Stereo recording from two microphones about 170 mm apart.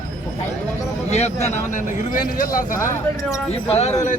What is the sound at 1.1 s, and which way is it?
Speech, 40° left (ahead or behind).